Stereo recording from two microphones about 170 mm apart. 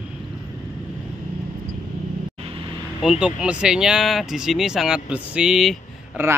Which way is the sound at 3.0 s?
5° right (ahead or behind).